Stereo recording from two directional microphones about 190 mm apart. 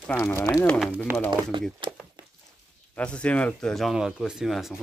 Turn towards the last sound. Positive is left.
turn(degrees=0)  # may be behind; listen again after turning